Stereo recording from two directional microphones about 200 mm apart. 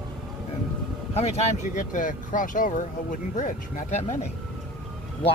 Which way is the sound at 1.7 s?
40° left (ahead or behind).